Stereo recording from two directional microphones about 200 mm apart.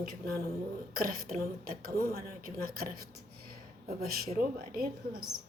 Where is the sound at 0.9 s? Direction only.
45° right (ahead or behind).